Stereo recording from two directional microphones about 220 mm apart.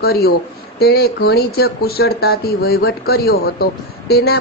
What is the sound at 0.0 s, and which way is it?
Speech, 45° left (ahead or behind).